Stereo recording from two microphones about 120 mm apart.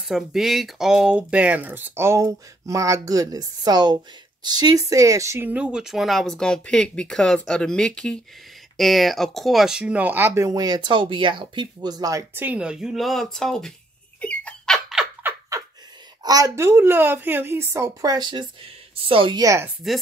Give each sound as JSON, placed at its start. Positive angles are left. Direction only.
{"t": 0.0, "sound": "speech", "side_deg": -5}
{"t": 5.5, "sound": "speech", "side_deg": -10}
{"t": 12.4, "sound": "speech", "side_deg": -10}
{"t": 14.2, "sound": "squeak", "side_deg": 10}
{"t": 16.2, "sound": "a woman's voice", "side_deg": -35}
{"t": 19.3, "sound": "speech", "side_deg": -30}
{"t": 19.8, "sound": "speech", "side_deg": 0}